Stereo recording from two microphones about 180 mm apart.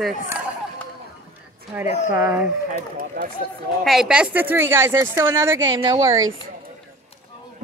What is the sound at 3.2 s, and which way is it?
Speech, 70° right (ahead or behind).